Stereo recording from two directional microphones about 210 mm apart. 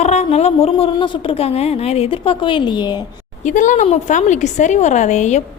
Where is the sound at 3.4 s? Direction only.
35° left (ahead or behind).